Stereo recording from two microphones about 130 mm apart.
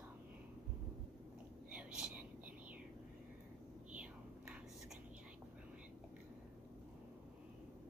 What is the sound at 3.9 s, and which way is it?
Whispering, 10° right (ahead or behind).